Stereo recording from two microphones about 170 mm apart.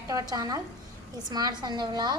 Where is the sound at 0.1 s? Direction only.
20° right (ahead or behind).